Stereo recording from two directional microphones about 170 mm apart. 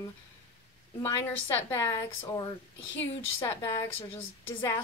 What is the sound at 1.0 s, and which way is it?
A woman's voice, 15° left (ahead or behind).